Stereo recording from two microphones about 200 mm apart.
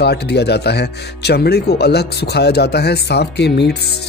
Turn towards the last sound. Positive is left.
turn(degrees=60)  # may be behind; listen again after turning